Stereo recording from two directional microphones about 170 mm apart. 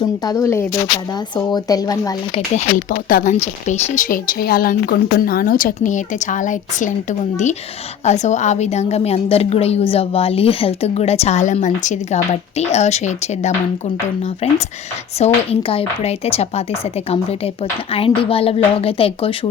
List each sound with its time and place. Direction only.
0.2 s speech: 20° left (ahead or behind)
3.1 s a woman's voice: 50° left (ahead or behind)
15.2 s a woman's voice: 35° left (ahead or behind)